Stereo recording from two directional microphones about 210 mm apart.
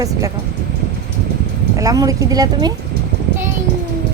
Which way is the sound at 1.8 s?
15° right (ahead or behind).